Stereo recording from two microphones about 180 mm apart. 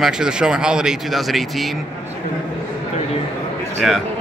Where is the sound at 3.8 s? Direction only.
Centre (ahead or behind).